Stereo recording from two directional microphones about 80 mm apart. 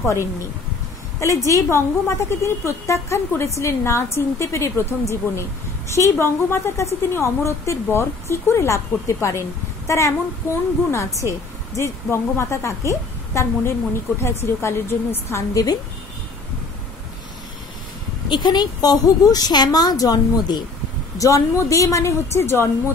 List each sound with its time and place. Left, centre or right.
0.0 s a woman's voice: left
5.9 s a woman's voice: left
15.5 s a woman's voice: left
18.3 s a woman's voice: left
21.2 s a woman's voice: left